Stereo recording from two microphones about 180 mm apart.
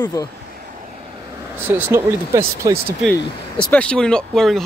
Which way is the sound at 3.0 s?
Centre (ahead or behind).